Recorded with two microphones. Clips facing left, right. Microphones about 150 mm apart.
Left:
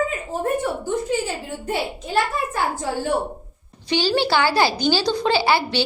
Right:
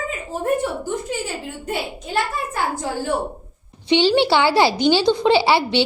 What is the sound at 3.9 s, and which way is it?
A woman's voice, 25° right (ahead or behind).